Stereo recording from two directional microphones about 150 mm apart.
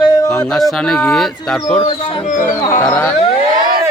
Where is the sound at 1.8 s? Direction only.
35° left (ahead or behind).